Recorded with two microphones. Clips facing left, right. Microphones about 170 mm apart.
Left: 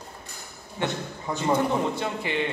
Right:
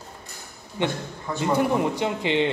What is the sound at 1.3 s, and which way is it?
Speech, 15° left (ahead or behind).